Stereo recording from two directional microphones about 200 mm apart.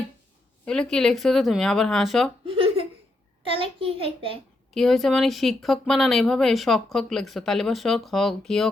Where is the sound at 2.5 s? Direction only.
30° right (ahead or behind).